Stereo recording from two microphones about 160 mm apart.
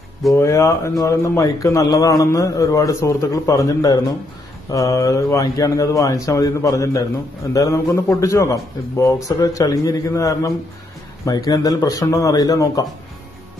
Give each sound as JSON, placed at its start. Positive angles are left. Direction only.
{"t": 0.3, "sound": "a man's voice", "side_deg": 20}